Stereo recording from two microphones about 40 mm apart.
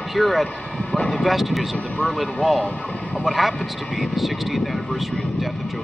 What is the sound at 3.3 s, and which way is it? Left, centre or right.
Speech, centre.